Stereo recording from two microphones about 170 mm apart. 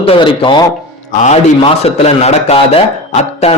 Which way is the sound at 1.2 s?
40° left (ahead or behind).